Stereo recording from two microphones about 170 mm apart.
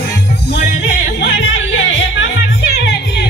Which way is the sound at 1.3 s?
90° left.